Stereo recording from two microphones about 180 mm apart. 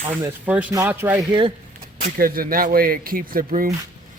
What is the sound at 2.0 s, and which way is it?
A man's voice, 50° right (ahead or behind).